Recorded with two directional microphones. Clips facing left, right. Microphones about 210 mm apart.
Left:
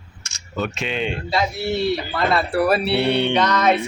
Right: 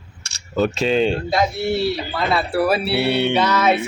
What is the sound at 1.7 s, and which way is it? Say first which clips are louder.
Speech: right 1 dB; centre (ahead or behind).